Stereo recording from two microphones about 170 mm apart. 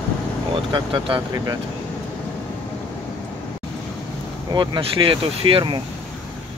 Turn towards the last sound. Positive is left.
turn(degrees=-30)  # may be behind; listen again after turning